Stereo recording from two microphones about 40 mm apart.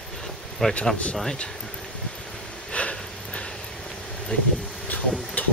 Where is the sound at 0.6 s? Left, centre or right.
Centre.